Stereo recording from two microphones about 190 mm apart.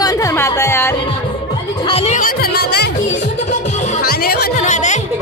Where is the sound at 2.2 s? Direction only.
50° left (ahead or behind).